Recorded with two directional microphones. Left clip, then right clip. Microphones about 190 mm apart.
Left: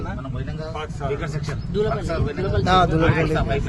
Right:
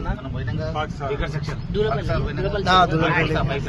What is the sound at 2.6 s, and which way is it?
Speech, 55° left (ahead or behind).